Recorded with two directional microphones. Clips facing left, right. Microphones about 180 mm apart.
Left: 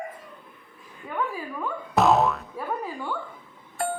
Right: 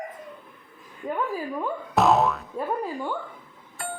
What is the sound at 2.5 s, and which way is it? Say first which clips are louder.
Music: right 3 dB; 15° right (ahead or behind).